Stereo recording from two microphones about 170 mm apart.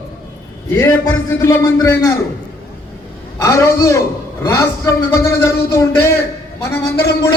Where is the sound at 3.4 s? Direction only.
15° left (ahead or behind).